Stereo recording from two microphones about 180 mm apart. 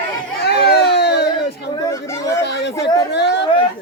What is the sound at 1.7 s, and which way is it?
Chatter, 15° left (ahead or behind).